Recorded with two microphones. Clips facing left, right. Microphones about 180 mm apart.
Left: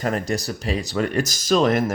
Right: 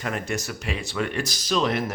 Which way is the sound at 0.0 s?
40° left (ahead or behind).